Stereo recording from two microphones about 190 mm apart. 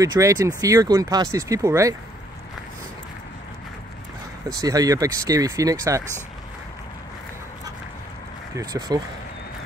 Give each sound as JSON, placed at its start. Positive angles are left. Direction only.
{"t": 0.0, "sound": "speech", "side_deg": -20}
{"t": 4.5, "sound": "speech", "side_deg": -20}
{"t": 8.5, "sound": "speech", "side_deg": -20}